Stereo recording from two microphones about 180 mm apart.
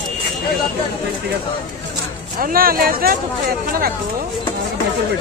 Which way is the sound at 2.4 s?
50° right (ahead or behind).